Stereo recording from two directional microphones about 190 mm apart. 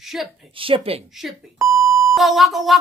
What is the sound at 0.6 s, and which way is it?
Speech, 30° right (ahead or behind).